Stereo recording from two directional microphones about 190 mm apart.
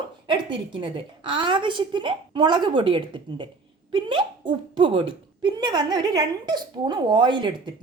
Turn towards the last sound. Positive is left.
turn(degrees=-25)  # may be behind; listen again after turning